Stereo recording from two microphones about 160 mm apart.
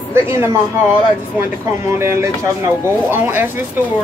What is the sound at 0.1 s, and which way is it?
Speech, 15° right (ahead or behind).